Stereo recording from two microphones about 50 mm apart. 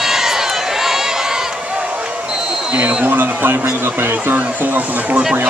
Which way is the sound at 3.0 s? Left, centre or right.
Right.